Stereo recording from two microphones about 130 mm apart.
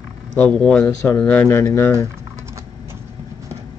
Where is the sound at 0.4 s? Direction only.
5° left (ahead or behind).